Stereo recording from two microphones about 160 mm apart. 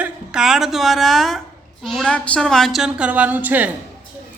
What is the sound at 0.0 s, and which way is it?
A woman's voice, 5° right (ahead or behind).